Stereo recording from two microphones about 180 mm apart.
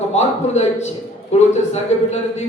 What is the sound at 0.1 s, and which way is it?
A man's voice, 40° left (ahead or behind).